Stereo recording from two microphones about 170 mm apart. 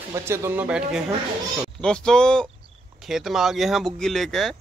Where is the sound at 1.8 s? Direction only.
5° left (ahead or behind).